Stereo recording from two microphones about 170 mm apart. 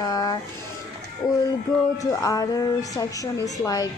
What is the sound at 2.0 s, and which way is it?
A woman's voice, 20° left (ahead or behind).